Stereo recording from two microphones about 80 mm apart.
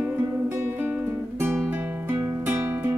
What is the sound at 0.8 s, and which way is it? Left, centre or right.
Music, right.